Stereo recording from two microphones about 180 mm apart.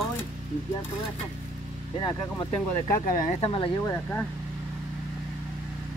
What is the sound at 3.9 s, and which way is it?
Speech, 10° left (ahead or behind).